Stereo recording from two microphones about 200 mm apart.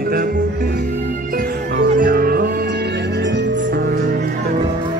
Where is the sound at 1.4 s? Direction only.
45° right (ahead or behind).